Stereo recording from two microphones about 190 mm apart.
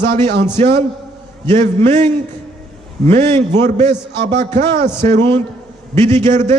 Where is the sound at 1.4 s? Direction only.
35° right (ahead or behind).